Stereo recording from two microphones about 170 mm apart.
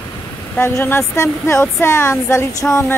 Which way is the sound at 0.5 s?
15° left (ahead or behind).